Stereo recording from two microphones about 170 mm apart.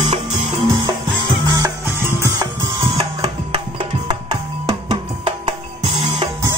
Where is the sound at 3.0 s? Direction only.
25° right (ahead or behind).